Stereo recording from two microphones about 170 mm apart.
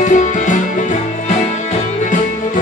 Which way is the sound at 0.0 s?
45° left (ahead or behind).